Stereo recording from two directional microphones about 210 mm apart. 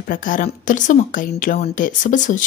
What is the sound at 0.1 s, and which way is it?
A woman's voice, 40° left (ahead or behind).